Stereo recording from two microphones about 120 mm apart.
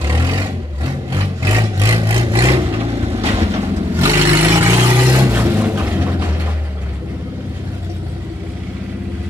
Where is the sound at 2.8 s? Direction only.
55° right (ahead or behind).